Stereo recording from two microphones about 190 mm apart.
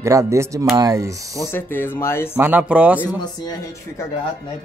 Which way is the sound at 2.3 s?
10° right (ahead or behind).